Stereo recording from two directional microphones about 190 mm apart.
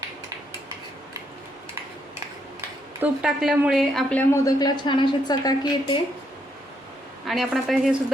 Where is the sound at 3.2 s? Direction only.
5° right (ahead or behind); by 5.9 s 20° left (ahead or behind).